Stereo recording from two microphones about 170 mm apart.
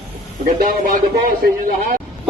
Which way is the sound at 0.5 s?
55° right (ahead or behind).